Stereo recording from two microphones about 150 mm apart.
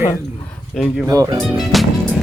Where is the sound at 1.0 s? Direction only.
25° right (ahead or behind).